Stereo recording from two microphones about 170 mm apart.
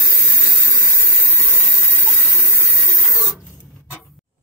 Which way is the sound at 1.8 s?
15° left (ahead or behind).